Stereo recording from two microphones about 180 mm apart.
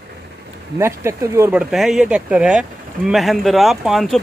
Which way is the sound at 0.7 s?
15° right (ahead or behind).